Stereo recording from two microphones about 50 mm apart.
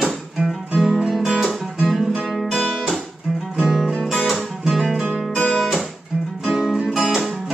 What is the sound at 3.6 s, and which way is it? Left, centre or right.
Music, centre.